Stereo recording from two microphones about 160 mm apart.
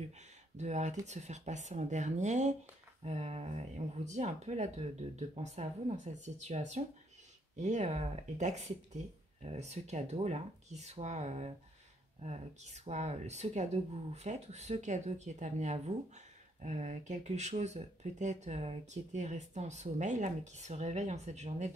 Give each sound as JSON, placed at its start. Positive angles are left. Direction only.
{"t": 0.6, "sound": "speech", "side_deg": -45}